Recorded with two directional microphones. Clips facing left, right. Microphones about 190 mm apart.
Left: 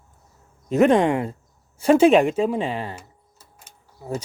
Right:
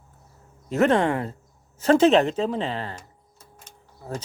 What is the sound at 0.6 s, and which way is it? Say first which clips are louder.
Speech: left 3 dB; 15° left (ahead or behind).